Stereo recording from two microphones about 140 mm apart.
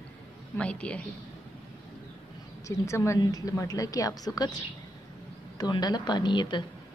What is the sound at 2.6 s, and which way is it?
A woman's voice, 20° left (ahead or behind).